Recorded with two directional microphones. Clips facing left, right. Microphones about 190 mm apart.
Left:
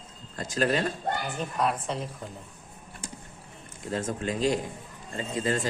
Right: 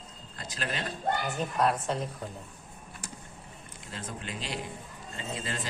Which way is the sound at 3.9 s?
45° left (ahead or behind).